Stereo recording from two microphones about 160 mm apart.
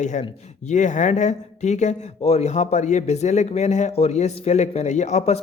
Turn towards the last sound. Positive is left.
turn(degrees=45)  # may be behind; listen again after turning